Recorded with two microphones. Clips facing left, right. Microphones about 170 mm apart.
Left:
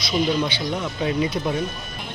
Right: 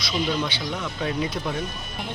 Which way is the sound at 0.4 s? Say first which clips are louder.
Left 4 dB; 15° left (ahead or behind).